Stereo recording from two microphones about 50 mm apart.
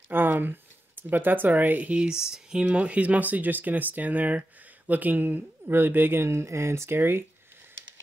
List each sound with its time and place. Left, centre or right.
0.1 s speech: right
2.0 s speech: centre
2.6 s speech: right
7.0 s speech: right